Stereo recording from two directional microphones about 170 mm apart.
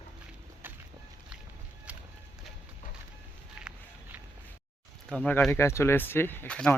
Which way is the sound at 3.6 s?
5° right (ahead or behind).